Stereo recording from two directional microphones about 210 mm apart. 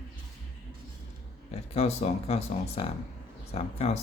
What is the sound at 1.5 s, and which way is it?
Speech, 30° left (ahead or behind).